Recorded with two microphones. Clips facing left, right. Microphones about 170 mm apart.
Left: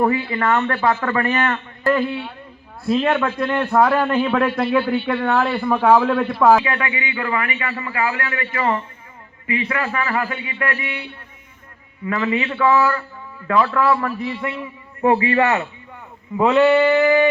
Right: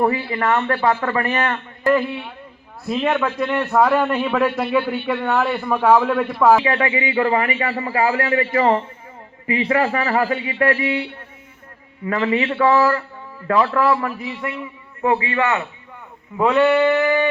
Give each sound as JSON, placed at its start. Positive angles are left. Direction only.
{"t": 0.1, "sound": "a man's voice", "side_deg": -30}
{"t": 3.1, "sound": "a man's voice", "side_deg": 0}
{"t": 6.7, "sound": "a man's voice", "side_deg": -30}
{"t": 14.2, "sound": "a man's voice", "side_deg": -5}
{"t": 15.3, "sound": "a man's voice", "side_deg": 35}
{"t": 16.4, "sound": "a man's voice", "side_deg": 5}